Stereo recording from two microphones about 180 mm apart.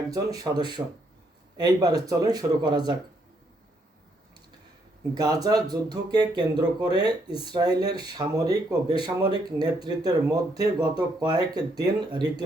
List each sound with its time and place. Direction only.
0.1 s speech: 20° right (ahead or behind)
5.1 s speech: 20° right (ahead or behind)